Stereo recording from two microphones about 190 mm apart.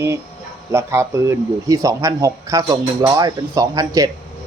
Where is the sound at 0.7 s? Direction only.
15° right (ahead or behind).